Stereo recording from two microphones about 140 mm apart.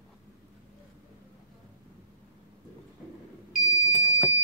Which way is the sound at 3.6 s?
30° left (ahead or behind).